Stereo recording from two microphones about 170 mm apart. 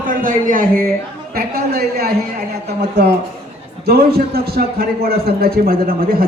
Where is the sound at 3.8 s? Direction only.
65° right (ahead or behind).